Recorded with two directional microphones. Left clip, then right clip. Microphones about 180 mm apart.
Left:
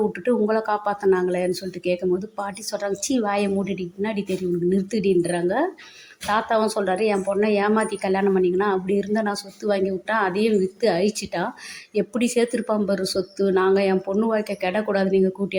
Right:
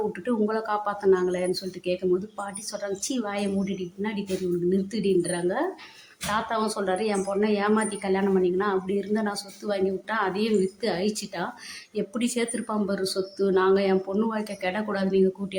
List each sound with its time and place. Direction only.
0.3 s a woman's voice: 20° left (ahead or behind)